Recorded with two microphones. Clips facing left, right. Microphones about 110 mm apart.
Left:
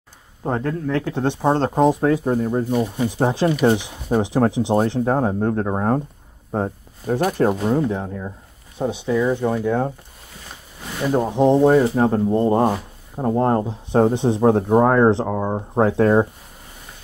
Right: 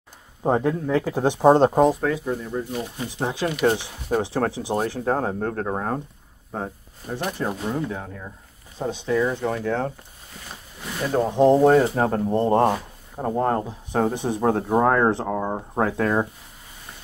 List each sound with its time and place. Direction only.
0.4 s speech: 15° right (ahead or behind)
1.9 s speech: 25° left (ahead or behind)
2.2 s speech: 45° left (ahead or behind)
7.1 s speech: 45° left (ahead or behind)
7.6 s speech: 25° left (ahead or behind)
8.7 s speech: 10° left (ahead or behind)
11.2 s speech: centre (ahead or behind); by 14.6 s 25° left (ahead or behind)
14.7 s speech: 15° left (ahead or behind)
15.2 s speech: 5° left (ahead or behind)
15.8 s speech: 25° left (ahead or behind)